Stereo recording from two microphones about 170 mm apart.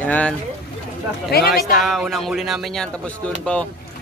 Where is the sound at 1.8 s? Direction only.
Centre (ahead or behind).